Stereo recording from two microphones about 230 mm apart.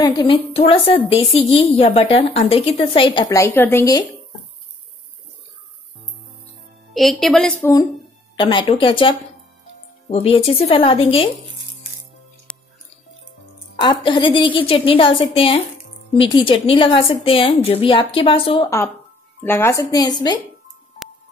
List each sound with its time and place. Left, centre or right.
0.0 s a woman's voice: left
6.9 s a woman's voice: centre
8.4 s a woman's voice: centre
12.5 s music: centre
13.7 s a woman's voice: left
19.4 s a woman's voice: centre